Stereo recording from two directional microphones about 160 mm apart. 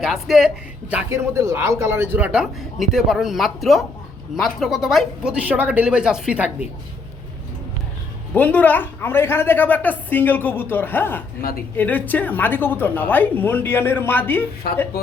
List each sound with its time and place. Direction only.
0.0 s speech: centre (ahead or behind)
8.3 s a woman's voice: 10° left (ahead or behind)
14.6 s speech: 70° left (ahead or behind)